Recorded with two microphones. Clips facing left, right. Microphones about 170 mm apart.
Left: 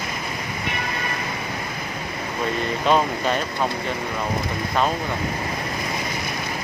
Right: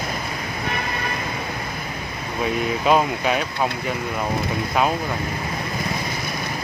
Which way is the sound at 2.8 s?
5° right (ahead or behind).